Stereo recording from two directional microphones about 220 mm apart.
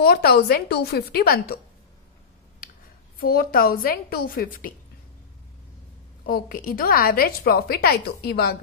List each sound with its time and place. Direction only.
0.0 s a woman's voice: 45° left (ahead or behind)
3.2 s a woman's voice: 40° left (ahead or behind)
6.2 s a woman's voice: 40° left (ahead or behind)